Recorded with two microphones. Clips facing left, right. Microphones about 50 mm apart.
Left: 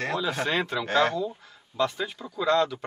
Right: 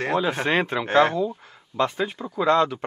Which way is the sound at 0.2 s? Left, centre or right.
Right.